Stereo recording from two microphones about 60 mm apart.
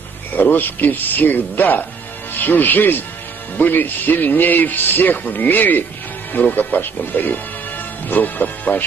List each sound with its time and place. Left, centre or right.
0.3 s speech: left